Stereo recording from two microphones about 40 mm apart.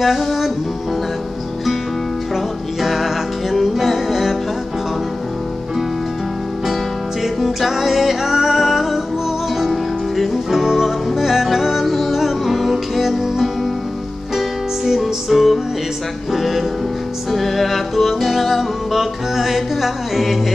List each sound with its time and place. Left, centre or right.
0.0 s music: centre
2.8 s music: centre
7.3 s music: centre
15.0 s music: centre